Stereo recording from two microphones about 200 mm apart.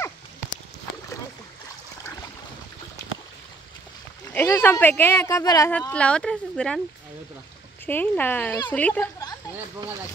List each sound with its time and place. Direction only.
4.3 s speech: 10° left (ahead or behind)
5.7 s speech: 5° left (ahead or behind)
7.8 s speech: 10° left (ahead or behind)